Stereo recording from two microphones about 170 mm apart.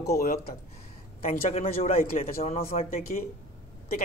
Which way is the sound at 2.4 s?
35° left (ahead or behind).